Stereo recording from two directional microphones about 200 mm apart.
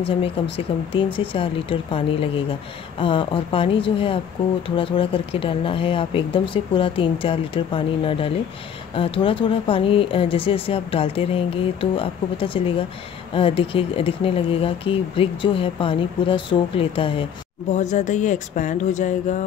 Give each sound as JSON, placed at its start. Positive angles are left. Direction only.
{"t": 0.0, "sound": "speech", "side_deg": 30}